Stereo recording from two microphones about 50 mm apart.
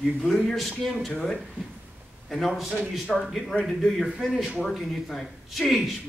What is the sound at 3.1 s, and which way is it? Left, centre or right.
Speech, centre.